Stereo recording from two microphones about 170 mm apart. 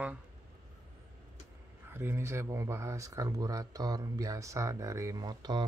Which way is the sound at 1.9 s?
15° right (ahead or behind).